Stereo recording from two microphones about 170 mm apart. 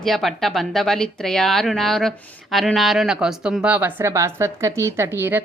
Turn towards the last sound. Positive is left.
turn(degrees=-15)  # may be behind; listen again after turning